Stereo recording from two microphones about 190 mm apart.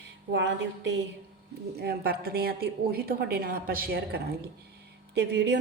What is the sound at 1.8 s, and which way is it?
A woman's voice, 55° right (ahead or behind).